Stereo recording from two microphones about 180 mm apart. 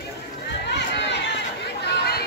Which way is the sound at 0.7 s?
70° left (ahead or behind).